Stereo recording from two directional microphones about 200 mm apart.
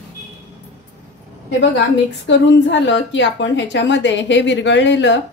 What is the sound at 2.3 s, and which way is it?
A woman's voice, 65° left (ahead or behind).